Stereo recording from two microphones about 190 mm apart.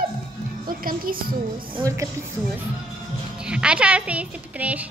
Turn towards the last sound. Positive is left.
turn(degrees=-5)  # may be behind; listen again after turning